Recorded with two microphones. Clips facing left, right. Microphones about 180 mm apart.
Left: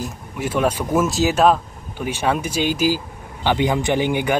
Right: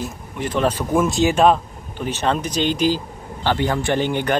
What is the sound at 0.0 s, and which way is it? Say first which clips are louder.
Speech: even; 10° left (ahead or behind).